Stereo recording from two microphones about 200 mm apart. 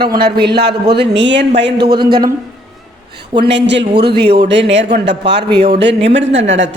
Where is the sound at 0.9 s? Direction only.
60° right (ahead or behind).